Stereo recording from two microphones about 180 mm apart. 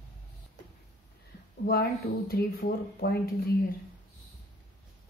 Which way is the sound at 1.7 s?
55° left (ahead or behind).